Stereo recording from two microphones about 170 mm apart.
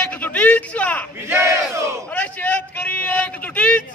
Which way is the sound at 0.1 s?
10° left (ahead or behind).